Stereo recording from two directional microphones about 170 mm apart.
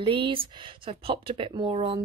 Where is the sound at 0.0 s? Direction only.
30° right (ahead or behind).